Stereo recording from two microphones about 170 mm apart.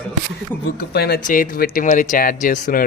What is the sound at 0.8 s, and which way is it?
Speech, 70° left (ahead or behind).